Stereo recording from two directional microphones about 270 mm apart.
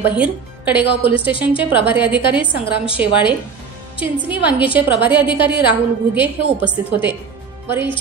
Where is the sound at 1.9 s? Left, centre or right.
Centre.